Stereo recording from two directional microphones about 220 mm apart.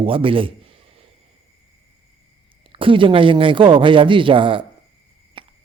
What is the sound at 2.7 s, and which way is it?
Speech, 25° right (ahead or behind).